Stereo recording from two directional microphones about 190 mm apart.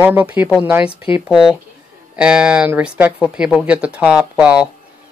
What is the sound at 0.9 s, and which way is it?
Speech, 30° left (ahead or behind).